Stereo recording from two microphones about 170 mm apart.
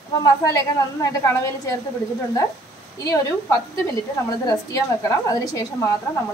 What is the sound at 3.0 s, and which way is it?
A woman's voice, 20° left (ahead or behind).